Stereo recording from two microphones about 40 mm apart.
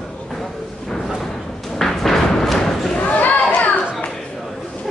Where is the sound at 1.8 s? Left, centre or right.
Centre.